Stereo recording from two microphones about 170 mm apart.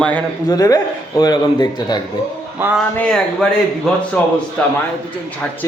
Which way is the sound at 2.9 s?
5° left (ahead or behind).